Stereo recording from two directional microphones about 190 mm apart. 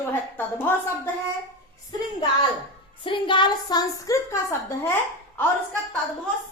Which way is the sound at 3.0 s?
25° left (ahead or behind).